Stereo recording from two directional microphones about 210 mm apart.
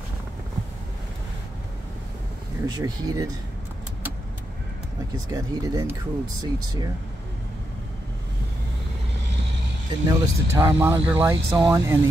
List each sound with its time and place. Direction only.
2.6 s speech: 15° right (ahead or behind)
5.1 s speech: 15° right (ahead or behind)
9.8 s speech: 15° right (ahead or behind)